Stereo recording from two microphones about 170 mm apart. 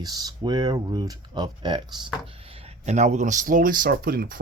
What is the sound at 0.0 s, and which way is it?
Speech, 20° right (ahead or behind).